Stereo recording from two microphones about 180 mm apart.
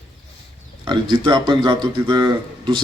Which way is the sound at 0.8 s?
25° right (ahead or behind).